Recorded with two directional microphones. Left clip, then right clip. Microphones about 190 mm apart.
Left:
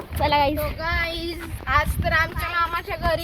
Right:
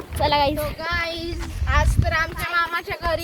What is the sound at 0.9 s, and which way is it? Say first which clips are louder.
Speech: left 1 dB; 25° left (ahead or behind).